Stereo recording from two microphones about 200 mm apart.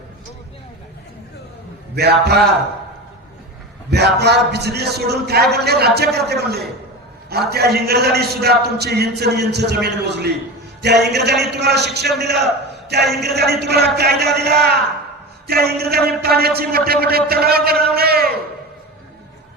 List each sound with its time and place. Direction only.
2.0 s a man's voice: 55° right (ahead or behind)
3.8 s a man's voice: 55° right (ahead or behind)